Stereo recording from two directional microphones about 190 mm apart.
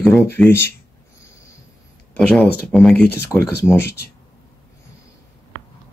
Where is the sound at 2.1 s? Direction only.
5° left (ahead or behind).